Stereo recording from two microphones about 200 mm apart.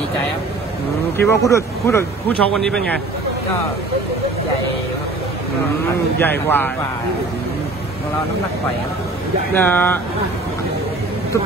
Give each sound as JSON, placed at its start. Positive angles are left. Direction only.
{"t": 1.1, "sound": "speech", "side_deg": 10}
{"t": 6.1, "sound": "speech", "side_deg": 10}
{"t": 9.5, "sound": "speech", "side_deg": 10}